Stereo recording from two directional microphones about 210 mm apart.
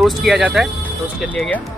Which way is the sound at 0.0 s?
Centre (ahead or behind).